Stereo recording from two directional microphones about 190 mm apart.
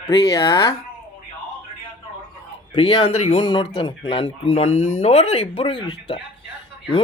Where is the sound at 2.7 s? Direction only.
25° left (ahead or behind).